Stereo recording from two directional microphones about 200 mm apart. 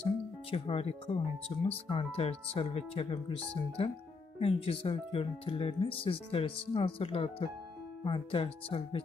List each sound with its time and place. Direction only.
0.5 s speech: 30° left (ahead or behind)